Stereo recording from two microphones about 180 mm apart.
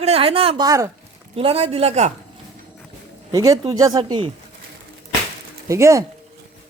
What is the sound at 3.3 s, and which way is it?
Speech, 20° right (ahead or behind).